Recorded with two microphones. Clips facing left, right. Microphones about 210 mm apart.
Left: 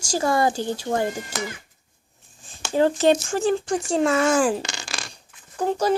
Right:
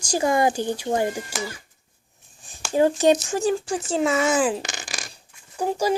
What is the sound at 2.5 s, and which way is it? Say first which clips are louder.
A child's voice: even; 15° right (ahead or behind).